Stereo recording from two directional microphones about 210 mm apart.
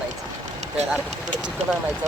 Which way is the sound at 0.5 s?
30° right (ahead or behind).